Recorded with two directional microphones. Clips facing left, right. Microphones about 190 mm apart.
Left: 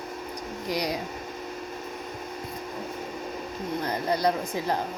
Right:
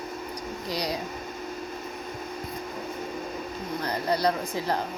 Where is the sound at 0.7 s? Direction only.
20° left (ahead or behind).